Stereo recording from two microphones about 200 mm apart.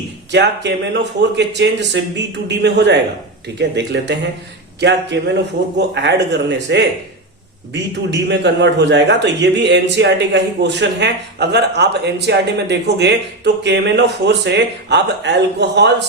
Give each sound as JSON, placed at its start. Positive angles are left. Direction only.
{"t": 0.3, "sound": "a man's voice", "side_deg": -60}